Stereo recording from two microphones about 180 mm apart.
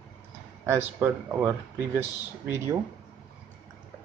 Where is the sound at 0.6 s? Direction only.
10° right (ahead or behind).